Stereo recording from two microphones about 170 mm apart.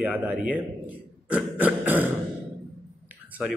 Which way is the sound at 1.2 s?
10° right (ahead or behind).